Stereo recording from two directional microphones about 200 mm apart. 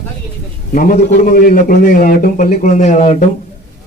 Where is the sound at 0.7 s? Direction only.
45° left (ahead or behind).